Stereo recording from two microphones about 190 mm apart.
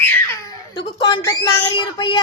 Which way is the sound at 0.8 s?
25° left (ahead or behind).